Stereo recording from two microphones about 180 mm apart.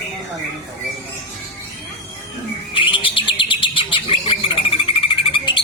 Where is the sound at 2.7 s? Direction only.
30° left (ahead or behind).